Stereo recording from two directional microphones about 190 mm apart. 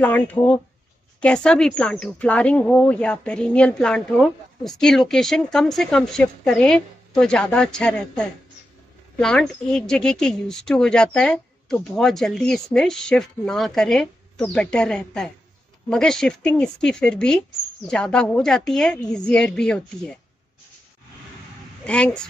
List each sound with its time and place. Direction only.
0.0 s speech: 10° left (ahead or behind)
21.8 s speech: 5° left (ahead or behind)